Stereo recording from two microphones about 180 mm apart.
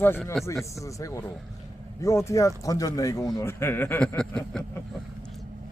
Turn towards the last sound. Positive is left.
turn(degrees=5)  # may be behind; listen again after turning